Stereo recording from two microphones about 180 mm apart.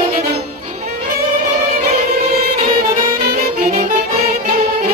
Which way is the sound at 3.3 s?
50° right (ahead or behind).